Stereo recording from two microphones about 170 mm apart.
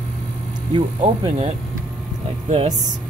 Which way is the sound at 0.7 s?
35° right (ahead or behind).